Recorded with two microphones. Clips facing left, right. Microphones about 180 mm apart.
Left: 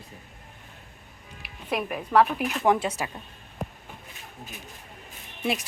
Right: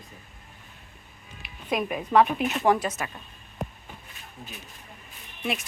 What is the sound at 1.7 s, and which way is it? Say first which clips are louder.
Speech: right 1 dB; centre (ahead or behind).